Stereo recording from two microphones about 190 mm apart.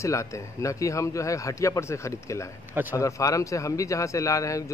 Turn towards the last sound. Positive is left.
turn(degrees=15)  # may be behind; listen again after turning